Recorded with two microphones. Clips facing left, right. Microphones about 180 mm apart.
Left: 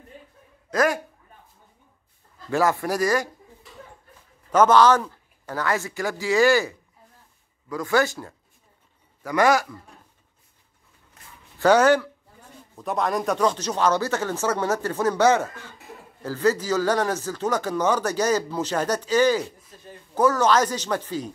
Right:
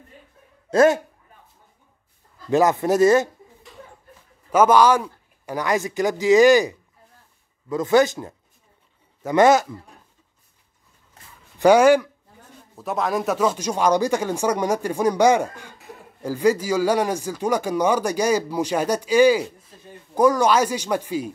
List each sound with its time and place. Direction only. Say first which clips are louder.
0.7 s speech: right 6 dB; 25° right (ahead or behind)
2.5 s speech: right 5 dB; 20° right (ahead or behind)
4.5 s a man's voice: right 1 dB; 10° right (ahead or behind)
11.5 s speech: right 3 dB; 10° right (ahead or behind)
12.7 s a man's voice: right 1 dB; centre (ahead or behind)